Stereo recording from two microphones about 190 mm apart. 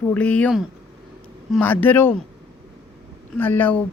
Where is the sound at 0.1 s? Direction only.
5° left (ahead or behind).